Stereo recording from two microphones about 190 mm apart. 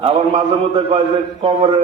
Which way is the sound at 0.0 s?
30° right (ahead or behind).